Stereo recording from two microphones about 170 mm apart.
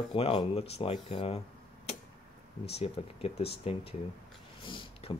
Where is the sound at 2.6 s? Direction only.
35° left (ahead or behind).